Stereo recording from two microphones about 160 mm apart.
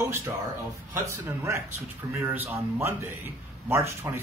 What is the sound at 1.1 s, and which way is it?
A man's voice, 20° right (ahead or behind).